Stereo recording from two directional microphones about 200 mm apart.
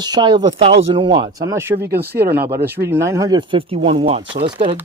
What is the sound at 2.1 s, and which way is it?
Speech, 50° right (ahead or behind).